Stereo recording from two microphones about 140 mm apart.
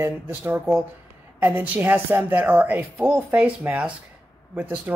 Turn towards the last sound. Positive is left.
turn(degrees=-15)  # may be behind; listen again after turning